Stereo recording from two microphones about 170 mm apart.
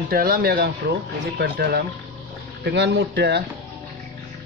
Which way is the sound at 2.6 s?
80° right.